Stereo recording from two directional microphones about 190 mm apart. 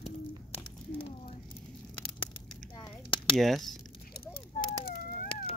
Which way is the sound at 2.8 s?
25° left (ahead or behind).